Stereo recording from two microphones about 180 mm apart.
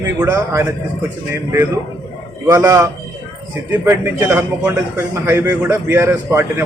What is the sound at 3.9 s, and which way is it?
A man's voice, 15° right (ahead or behind).